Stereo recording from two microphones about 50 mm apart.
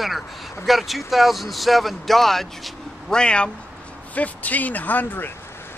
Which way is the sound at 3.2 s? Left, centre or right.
Centre.